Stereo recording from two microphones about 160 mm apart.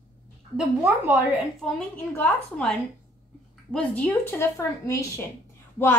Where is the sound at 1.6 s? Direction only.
10° left (ahead or behind).